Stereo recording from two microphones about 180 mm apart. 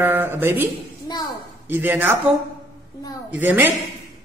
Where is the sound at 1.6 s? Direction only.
10° right (ahead or behind).